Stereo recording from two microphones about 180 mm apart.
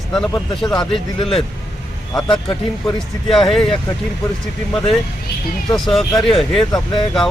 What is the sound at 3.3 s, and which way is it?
Speech, centre (ahead or behind).